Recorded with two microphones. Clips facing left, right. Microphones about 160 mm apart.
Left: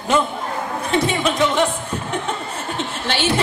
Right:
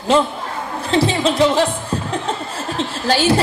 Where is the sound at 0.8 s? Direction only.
30° right (ahead or behind).